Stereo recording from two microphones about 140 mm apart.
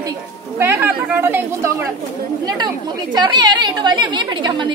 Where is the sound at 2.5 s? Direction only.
30° right (ahead or behind).